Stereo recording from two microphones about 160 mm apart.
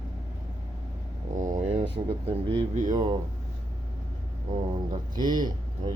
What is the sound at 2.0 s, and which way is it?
Speech, 35° right (ahead or behind).